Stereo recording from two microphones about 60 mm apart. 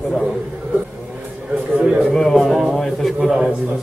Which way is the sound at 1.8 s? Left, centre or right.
Right.